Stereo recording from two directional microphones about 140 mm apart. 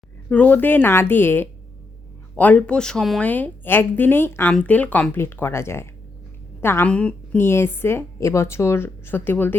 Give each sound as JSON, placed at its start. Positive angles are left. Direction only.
{"t": 0.3, "sound": "a woman's voice", "side_deg": 10}